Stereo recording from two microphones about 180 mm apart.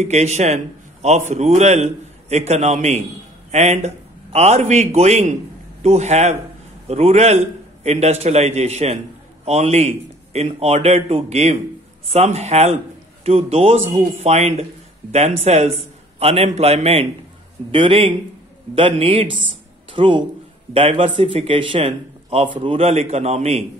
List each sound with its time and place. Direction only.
0.0 s a man's voice: 40° right (ahead or behind)
19.3 s a sound: 30° right (ahead or behind)
20.7 s a man's voice: 30° right (ahead or behind)